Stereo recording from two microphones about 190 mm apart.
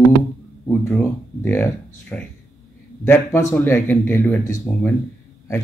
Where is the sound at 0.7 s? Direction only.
5° left (ahead or behind).